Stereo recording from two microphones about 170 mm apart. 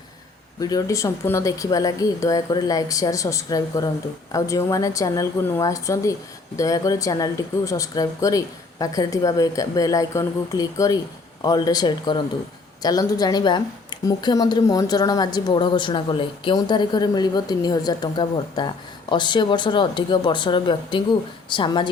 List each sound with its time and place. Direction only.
0.6 s a woman's voice: 20° left (ahead or behind)